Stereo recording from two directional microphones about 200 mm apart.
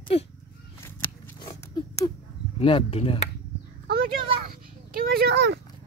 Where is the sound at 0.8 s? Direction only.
10° left (ahead or behind).